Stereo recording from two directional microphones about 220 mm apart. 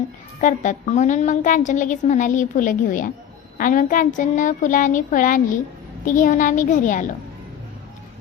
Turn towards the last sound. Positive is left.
turn(degrees=35)  # may be behind; listen again after turning